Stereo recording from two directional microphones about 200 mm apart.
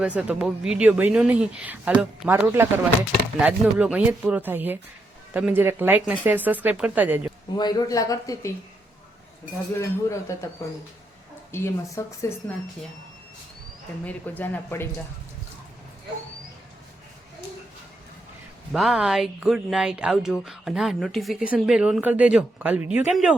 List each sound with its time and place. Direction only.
0.0 s a woman's voice: 5° right (ahead or behind)
7.5 s speech: 20° left (ahead or behind)
9.7 s speech: 15° left (ahead or behind)
11.5 s speech: 15° left (ahead or behind)
14.0 s speech: 10° left (ahead or behind)
18.7 s speech: centre (ahead or behind)